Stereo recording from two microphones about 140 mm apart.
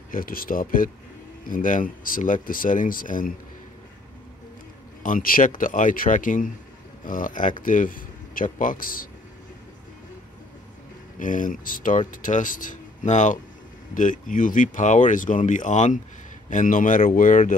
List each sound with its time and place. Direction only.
0.1 s speech: 90° left
5.0 s speech: 80° left
11.1 s speech: 70° left (ahead or behind)